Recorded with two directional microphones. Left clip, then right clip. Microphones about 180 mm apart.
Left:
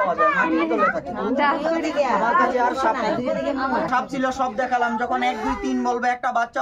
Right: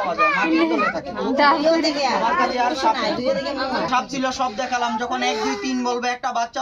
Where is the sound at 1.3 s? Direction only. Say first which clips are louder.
Right 5 dB; 50° right (ahead or behind).